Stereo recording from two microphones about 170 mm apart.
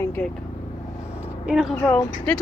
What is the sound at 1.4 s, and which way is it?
Speech, 5° right (ahead or behind).